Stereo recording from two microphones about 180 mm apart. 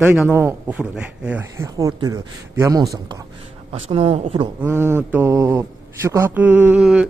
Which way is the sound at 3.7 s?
35° right (ahead or behind).